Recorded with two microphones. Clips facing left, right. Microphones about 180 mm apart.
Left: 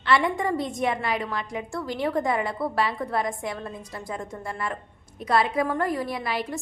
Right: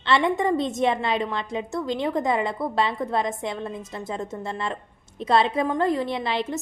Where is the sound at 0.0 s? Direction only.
25° right (ahead or behind).